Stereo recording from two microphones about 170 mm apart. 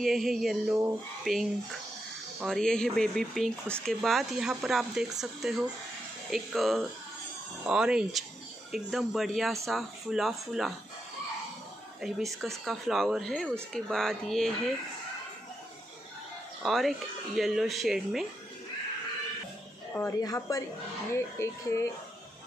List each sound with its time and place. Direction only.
0.0 s speech: centre (ahead or behind)
12.0 s speech: centre (ahead or behind)
16.6 s speech: centre (ahead or behind)
19.9 s speech: 15° left (ahead or behind)